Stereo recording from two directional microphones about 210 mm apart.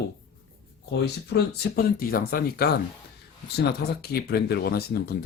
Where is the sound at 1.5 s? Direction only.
45° left (ahead or behind).